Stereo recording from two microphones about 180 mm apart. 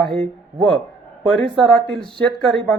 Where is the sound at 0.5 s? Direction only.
30° right (ahead or behind).